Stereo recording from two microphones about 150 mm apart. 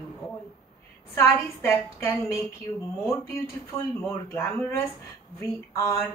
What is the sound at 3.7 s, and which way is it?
Speech, 20° left (ahead or behind).